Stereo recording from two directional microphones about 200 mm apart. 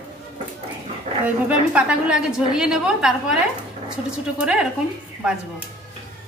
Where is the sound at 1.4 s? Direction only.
5° right (ahead or behind).